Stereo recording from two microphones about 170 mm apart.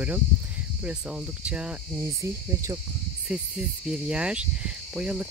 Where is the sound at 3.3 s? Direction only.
5° right (ahead or behind).